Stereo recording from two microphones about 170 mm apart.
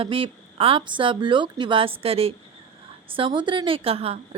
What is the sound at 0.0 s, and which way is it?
A woman's voice, 35° right (ahead or behind).